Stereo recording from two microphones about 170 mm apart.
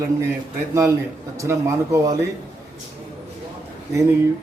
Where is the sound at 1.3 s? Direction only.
15° right (ahead or behind).